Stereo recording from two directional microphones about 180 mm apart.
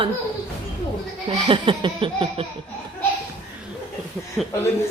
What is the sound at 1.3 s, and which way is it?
Laughter, 30° right (ahead or behind).